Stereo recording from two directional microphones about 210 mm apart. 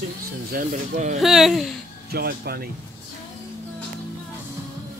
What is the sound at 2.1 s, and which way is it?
Speech, 50° right (ahead or behind).